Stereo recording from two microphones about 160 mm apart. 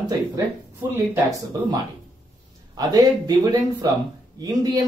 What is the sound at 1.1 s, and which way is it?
Speech, 20° right (ahead or behind).